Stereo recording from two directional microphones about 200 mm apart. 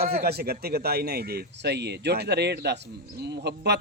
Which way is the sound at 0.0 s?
50° right (ahead or behind).